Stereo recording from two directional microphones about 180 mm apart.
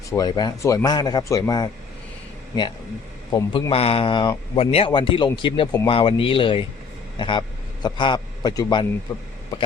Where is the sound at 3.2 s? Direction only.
20° left (ahead or behind).